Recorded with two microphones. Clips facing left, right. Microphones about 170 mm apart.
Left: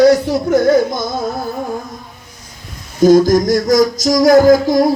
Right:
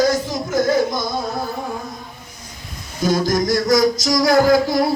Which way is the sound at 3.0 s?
45° left (ahead or behind).